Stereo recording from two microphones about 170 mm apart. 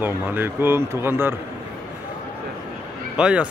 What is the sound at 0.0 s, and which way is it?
A man's voice, 10° right (ahead or behind).